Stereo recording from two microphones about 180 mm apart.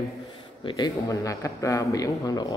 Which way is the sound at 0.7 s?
25° left (ahead or behind).